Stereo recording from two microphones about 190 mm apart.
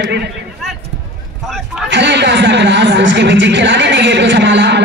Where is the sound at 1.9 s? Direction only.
65° right (ahead or behind).